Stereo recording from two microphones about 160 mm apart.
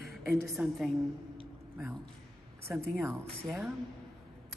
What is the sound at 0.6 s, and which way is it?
Speech, 10° right (ahead or behind).